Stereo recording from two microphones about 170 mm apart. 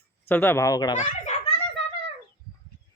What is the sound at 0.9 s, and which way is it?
Speech, 45° left (ahead or behind).